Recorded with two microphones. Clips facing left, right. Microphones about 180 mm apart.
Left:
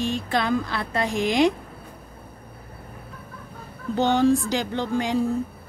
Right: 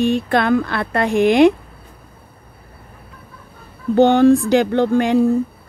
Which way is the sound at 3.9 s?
60° right (ahead or behind).